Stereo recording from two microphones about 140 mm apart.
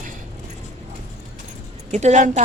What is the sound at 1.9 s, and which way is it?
Speech, 55° right (ahead or behind).